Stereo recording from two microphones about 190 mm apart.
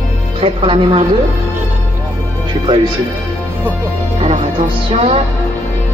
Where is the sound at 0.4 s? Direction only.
30° right (ahead or behind).